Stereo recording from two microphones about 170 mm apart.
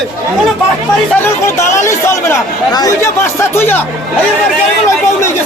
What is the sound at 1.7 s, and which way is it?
Speech, 15° left (ahead or behind).